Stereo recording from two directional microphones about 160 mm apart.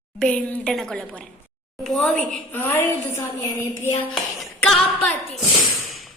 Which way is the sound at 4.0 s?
5° left (ahead or behind).